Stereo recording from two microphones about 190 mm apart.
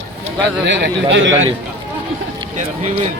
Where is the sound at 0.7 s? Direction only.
70° right (ahead or behind).